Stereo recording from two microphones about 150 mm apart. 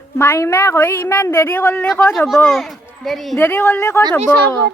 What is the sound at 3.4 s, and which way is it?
A woman's voice, 15° left (ahead or behind).